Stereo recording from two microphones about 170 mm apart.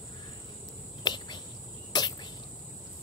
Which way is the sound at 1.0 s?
25° left (ahead or behind).